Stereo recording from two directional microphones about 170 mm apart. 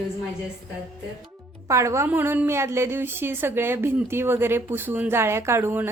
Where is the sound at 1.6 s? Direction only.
15° right (ahead or behind).